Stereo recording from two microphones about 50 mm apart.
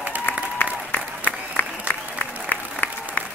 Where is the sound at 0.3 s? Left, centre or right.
Left.